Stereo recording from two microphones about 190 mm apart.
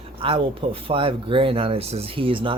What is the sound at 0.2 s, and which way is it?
Speech, 25° right (ahead or behind).